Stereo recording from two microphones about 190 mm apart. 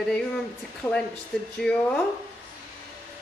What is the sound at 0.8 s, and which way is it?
A woman's voice, 15° left (ahead or behind).